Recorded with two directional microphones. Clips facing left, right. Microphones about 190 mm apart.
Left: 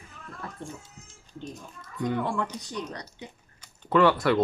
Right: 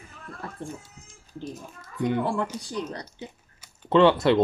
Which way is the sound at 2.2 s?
30° right (ahead or behind).